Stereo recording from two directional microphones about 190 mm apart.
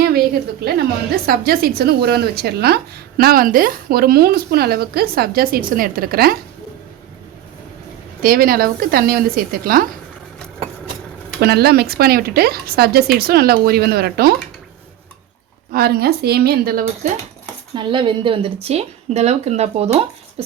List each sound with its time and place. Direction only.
0.6 s a woman's voice: 55° right (ahead or behind)
8.2 s a woman's voice: 50° right (ahead or behind)
11.3 s a woman's voice: 55° right (ahead or behind)
15.7 s speech: 55° right (ahead or behind)
17.7 s speech: 25° right (ahead or behind)